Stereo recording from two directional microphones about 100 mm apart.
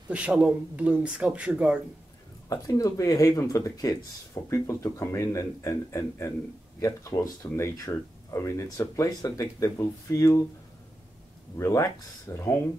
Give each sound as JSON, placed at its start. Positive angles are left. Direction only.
{"t": 0.1, "sound": "speech", "side_deg": -10}
{"t": 2.5, "sound": "speech", "side_deg": 35}
{"t": 11.5, "sound": "speech", "side_deg": 30}